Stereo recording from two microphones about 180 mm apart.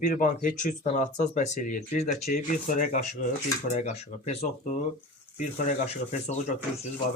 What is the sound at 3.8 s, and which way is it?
Speech, 40° left (ahead or behind).